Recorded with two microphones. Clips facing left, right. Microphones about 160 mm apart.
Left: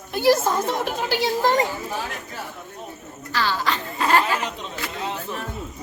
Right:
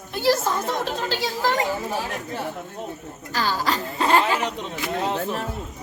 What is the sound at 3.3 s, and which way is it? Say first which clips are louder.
Speech: even; 40° right (ahead or behind).